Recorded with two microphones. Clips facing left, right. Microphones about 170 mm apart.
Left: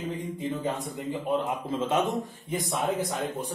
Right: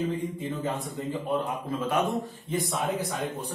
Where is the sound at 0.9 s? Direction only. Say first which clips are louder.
Left 1 dB; 20° left (ahead or behind).